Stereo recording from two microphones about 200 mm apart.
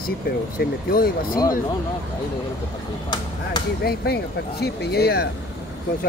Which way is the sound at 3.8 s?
50° left (ahead or behind).